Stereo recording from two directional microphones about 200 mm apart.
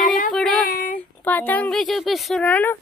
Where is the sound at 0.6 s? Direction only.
45° left (ahead or behind).